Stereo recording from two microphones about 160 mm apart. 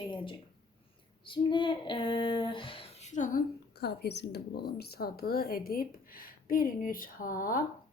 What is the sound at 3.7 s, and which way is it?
A woman's voice, 90° left.